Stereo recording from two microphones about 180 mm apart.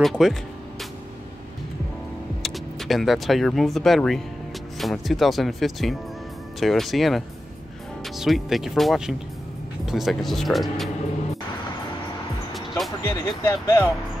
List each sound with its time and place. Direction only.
0.0 s speech: centre (ahead or behind)
2.4 s speech: centre (ahead or behind)
12.5 s music: centre (ahead or behind)
13.0 s speech: 15° left (ahead or behind)